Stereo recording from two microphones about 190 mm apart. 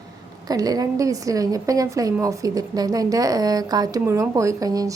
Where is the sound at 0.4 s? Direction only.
20° right (ahead or behind).